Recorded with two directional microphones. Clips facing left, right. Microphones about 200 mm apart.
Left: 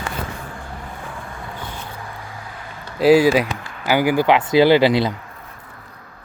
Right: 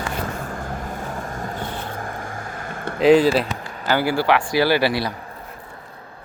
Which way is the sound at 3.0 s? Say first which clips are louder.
Left 1 dB; 10° left (ahead or behind).